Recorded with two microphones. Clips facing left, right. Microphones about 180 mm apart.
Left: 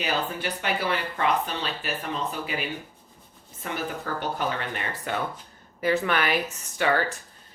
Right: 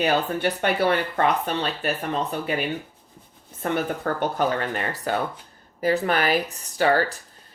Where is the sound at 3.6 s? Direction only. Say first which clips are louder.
Right 7 dB; 55° right (ahead or behind).